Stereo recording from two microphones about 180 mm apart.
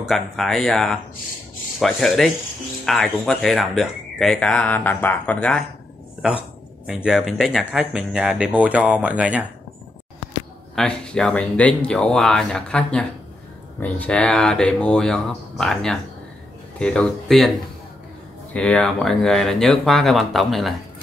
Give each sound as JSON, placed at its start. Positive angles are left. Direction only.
{"t": 0.0, "sound": "speech", "side_deg": 0}
{"t": 6.9, "sound": "speech", "side_deg": -5}
{"t": 10.8, "sound": "speech", "side_deg": 5}
{"t": 18.5, "sound": "speech", "side_deg": 5}